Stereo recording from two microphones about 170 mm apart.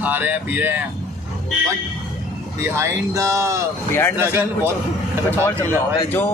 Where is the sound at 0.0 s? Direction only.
10° right (ahead or behind).